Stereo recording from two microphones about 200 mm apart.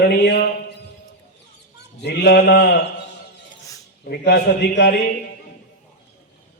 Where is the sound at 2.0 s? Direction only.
55° left (ahead or behind).